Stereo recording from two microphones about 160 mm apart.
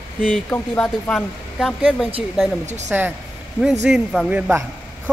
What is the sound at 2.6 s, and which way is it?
Speech, 45° right (ahead or behind).